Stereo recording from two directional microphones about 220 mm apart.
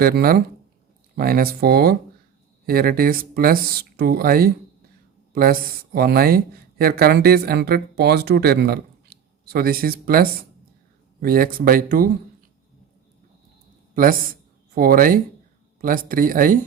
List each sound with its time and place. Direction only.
0.0 s speech: 45° right (ahead or behind)
13.9 s speech: 40° right (ahead or behind)